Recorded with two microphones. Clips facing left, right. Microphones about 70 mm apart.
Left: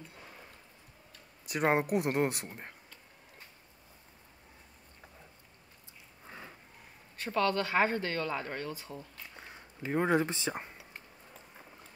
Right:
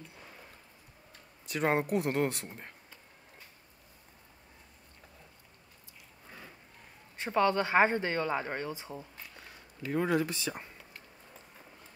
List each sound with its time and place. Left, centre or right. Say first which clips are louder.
1.4 s speech: left 1 dB; centre
6.2 s a sound: left 2 dB; left
7.2 s speech: right 2 dB; right
9.3 s speech: left 2 dB; left